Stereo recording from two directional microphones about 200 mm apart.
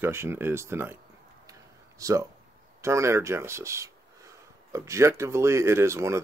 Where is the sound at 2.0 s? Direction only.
15° right (ahead or behind).